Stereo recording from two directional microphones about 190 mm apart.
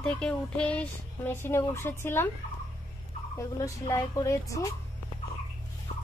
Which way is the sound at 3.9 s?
15° left (ahead or behind).